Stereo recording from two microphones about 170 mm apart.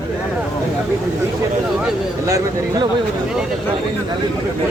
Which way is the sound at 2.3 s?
20° right (ahead or behind).